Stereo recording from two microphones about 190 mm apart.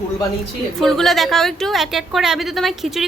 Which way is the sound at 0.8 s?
Centre (ahead or behind).